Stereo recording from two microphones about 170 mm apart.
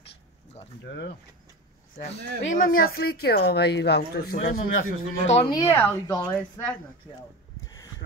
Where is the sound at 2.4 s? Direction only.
50° left (ahead or behind).